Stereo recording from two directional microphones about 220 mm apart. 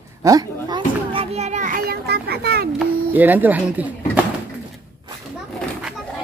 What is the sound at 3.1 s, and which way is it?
Speech, 10° right (ahead or behind).